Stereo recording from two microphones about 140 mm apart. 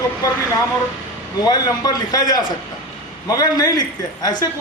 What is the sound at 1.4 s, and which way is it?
A man's voice, 30° left (ahead or behind).